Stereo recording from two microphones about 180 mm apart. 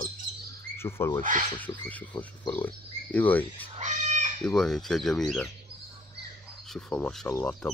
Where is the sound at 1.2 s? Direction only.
45° right (ahead or behind).